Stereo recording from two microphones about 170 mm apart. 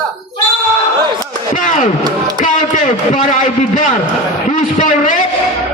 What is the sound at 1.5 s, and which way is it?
A man's voice, 50° left (ahead or behind).